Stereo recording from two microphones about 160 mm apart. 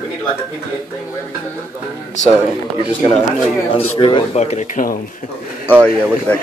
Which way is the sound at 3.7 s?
35° left (ahead or behind).